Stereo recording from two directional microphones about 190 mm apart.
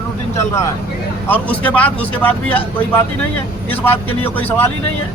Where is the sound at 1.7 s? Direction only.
5° left (ahead or behind).